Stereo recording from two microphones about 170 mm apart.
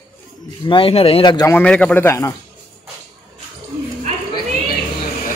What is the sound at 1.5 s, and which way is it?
Speech, 5° left (ahead or behind).